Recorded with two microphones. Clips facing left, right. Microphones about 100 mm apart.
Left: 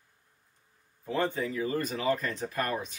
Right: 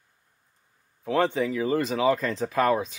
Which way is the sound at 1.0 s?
90° right.